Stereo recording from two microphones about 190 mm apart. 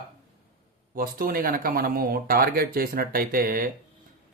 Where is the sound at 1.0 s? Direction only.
50° right (ahead or behind).